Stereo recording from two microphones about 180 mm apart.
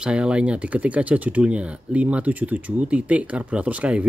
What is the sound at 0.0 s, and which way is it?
Speech, 5° right (ahead or behind).